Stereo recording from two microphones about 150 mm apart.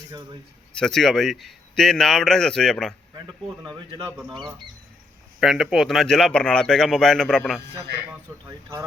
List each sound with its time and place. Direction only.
0.7 s speech: 5° left (ahead or behind)
3.6 s a man's voice: 30° right (ahead or behind)
5.4 s speech: centre (ahead or behind)